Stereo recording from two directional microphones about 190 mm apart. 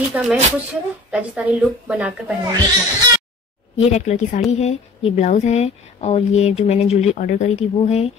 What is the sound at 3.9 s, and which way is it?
Speech, 40° left (ahead or behind).